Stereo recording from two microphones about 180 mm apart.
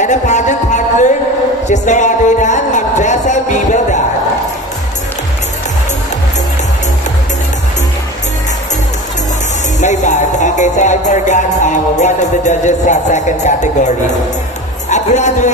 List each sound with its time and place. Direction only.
0.0 s a sound: 40° left (ahead or behind)
1.7 s music: 45° left (ahead or behind)
9.8 s music: 40° left (ahead or behind)
14.9 s speech: 40° left (ahead or behind)